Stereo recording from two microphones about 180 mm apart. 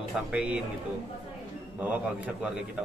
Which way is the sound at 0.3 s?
5° right (ahead or behind).